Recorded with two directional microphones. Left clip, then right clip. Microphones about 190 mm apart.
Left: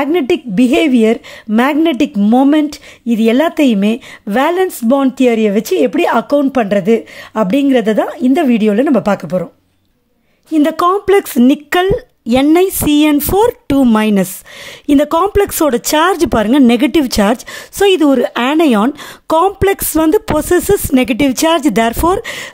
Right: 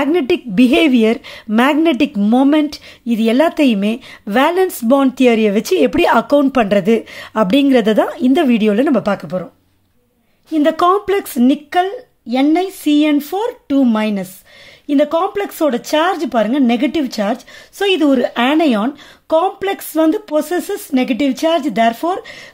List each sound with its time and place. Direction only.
0.0 s a woman's voice: 10° left (ahead or behind)
10.5 s a woman's voice: 20° left (ahead or behind)
11.8 s a woman's voice: 45° left (ahead or behind)